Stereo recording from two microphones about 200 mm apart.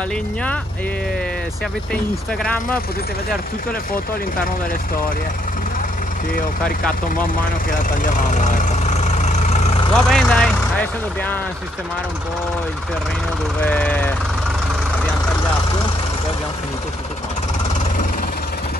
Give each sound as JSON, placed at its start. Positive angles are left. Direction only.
{"t": 2.4, "sound": "speech", "side_deg": 5}
{"t": 8.0, "sound": "speech", "side_deg": 40}
{"t": 9.2, "sound": "vehicle", "side_deg": 35}
{"t": 10.0, "sound": "speech", "side_deg": 5}
{"t": 13.6, "sound": "speech", "side_deg": 5}